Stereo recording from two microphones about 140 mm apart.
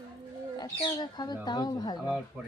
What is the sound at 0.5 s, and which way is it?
A woman's voice, 30° left (ahead or behind).